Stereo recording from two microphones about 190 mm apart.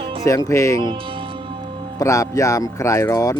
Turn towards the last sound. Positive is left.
turn(degrees=15)  # may be behind; listen again after turning